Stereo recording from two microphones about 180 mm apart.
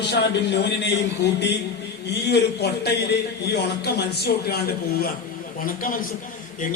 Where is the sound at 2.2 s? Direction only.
65° left (ahead or behind).